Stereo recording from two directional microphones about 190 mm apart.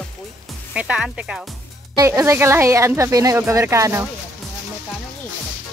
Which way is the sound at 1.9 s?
20° right (ahead or behind).